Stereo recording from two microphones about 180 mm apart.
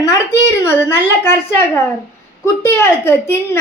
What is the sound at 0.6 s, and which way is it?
Speech, 15° left (ahead or behind).